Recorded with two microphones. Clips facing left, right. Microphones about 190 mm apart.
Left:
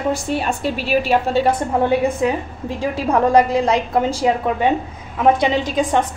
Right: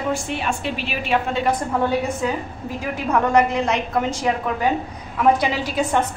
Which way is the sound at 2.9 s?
30° left (ahead or behind).